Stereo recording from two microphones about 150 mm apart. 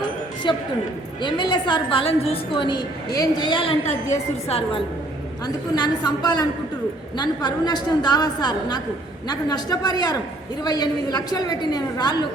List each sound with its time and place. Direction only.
0.4 s a woman's voice: 30° left (ahead or behind)
5.7 s a woman's voice: 30° left (ahead or behind)